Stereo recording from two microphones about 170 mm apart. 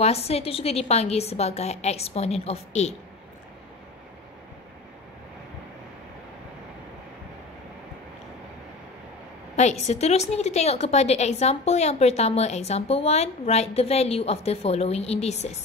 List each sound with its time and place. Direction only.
0.0 s a woman's voice: 35° left (ahead or behind)
9.6 s a woman's voice: 40° left (ahead or behind)